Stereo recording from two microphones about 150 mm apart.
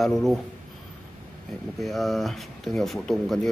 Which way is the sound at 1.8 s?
Centre (ahead or behind).